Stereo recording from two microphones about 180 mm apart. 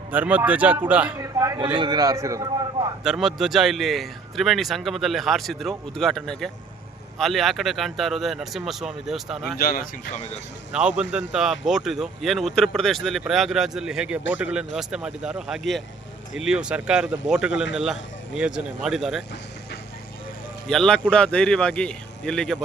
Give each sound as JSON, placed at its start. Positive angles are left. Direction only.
{"t": 0.1, "sound": "a man's voice", "side_deg": -10}
{"t": 3.0, "sound": "a man's voice", "side_deg": 0}
{"t": 9.6, "sound": "speech", "side_deg": 50}
{"t": 10.7, "sound": "a man's voice", "side_deg": -5}
{"t": 20.7, "sound": "a man's voice", "side_deg": 5}